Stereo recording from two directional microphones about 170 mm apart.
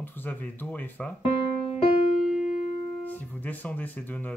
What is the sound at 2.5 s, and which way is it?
Music, 45° left (ahead or behind).